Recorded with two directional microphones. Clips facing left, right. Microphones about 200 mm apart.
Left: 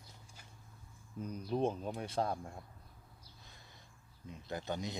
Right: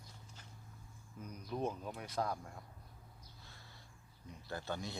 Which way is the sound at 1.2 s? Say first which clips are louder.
Left 5 dB; 30° left (ahead or behind).